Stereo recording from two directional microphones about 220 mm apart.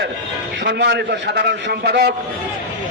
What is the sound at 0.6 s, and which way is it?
A man's voice, 50° right (ahead or behind).